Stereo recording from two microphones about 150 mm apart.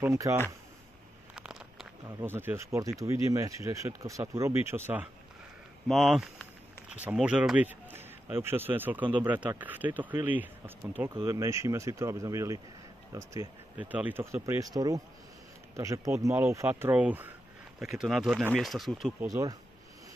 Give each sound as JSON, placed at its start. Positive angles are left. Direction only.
{"t": 0.0, "sound": "speech", "side_deg": -20}
{"t": 1.3, "sound": "a sound", "side_deg": -5}
{"t": 2.0, "sound": "speech", "side_deg": -15}
{"t": 5.9, "sound": "speech", "side_deg": 0}
{"t": 11.1, "sound": "speech", "side_deg": -20}
{"t": 13.7, "sound": "speech", "side_deg": -10}
{"t": 19.1, "sound": "speech", "side_deg": -20}